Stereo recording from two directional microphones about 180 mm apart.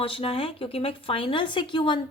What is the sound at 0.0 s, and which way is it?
A woman's voice, 30° left (ahead or behind).